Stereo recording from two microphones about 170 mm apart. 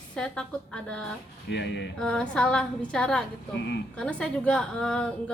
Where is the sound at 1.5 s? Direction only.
90° left.